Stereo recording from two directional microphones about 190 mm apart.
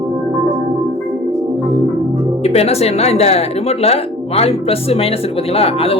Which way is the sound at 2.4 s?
35° left (ahead or behind).